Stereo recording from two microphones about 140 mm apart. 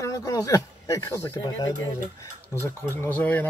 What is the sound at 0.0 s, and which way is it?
Speech, 25° left (ahead or behind).